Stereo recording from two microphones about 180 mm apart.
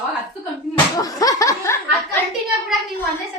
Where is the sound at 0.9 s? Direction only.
20° left (ahead or behind).